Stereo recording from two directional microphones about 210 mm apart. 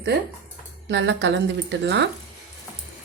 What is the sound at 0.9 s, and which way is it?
Speech, 55° right (ahead or behind).